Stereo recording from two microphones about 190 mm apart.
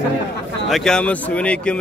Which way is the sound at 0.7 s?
5° left (ahead or behind).